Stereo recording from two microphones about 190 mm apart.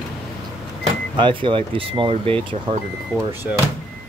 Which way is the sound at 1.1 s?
25° right (ahead or behind).